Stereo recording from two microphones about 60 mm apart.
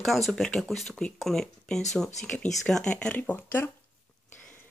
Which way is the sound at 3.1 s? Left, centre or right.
Left.